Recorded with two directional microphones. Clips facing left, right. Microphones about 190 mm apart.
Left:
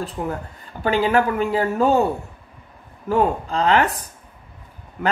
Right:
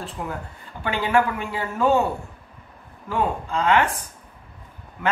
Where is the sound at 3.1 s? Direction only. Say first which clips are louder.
Left 5 dB; 40° left (ahead or behind).